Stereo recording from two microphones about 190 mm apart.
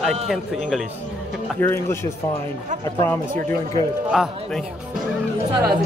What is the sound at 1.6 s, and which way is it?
Speech, 15° left (ahead or behind).